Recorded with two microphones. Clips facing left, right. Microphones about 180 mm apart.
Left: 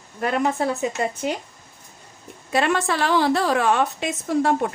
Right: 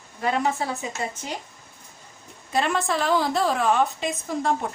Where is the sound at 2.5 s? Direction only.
70° left (ahead or behind).